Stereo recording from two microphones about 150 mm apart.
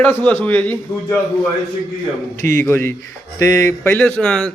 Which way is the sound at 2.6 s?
15° left (ahead or behind).